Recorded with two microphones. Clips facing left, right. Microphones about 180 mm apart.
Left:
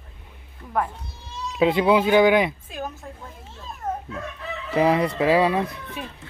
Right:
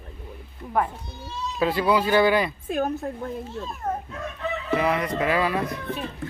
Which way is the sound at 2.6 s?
60° right (ahead or behind).